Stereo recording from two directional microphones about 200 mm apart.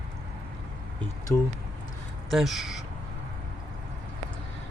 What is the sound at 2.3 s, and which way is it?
Speech, centre (ahead or behind).